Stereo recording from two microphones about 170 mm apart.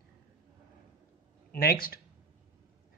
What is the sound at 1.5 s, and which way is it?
Speech, 60° left (ahead or behind).